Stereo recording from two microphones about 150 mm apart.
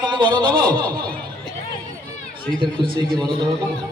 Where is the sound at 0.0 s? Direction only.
30° right (ahead or behind).